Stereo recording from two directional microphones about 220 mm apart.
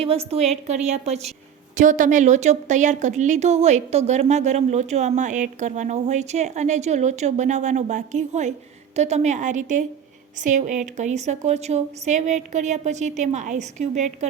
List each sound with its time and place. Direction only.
0.0 s a woman's voice: 25° right (ahead or behind)